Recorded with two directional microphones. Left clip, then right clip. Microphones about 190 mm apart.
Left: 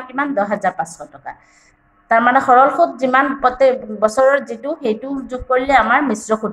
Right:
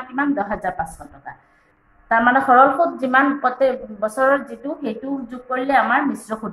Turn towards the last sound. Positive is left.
turn(degrees=45)  # may be behind; listen again after turning